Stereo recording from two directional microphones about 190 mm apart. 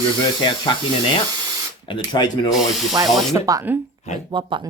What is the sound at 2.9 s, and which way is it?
Speech, 20° right (ahead or behind).